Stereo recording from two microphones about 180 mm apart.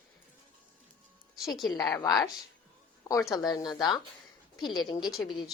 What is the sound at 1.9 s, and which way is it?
Speech, 20° left (ahead or behind).